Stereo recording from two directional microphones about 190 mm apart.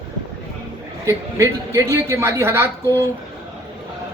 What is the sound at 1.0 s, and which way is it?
A woman's voice, 15° right (ahead or behind).